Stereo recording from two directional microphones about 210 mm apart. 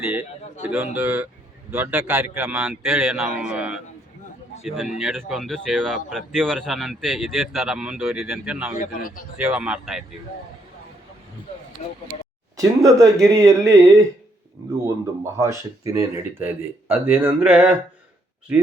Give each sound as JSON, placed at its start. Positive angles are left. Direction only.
{"t": 0.0, "sound": "a sound", "side_deg": -5}
{"t": 0.9, "sound": "speech", "side_deg": -10}
{"t": 8.8, "sound": "speech", "side_deg": 40}
{"t": 9.4, "sound": "speech", "side_deg": -5}
{"t": 12.5, "sound": "speech", "side_deg": -15}